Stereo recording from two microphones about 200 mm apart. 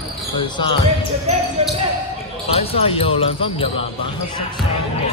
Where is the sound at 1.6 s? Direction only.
30° right (ahead or behind).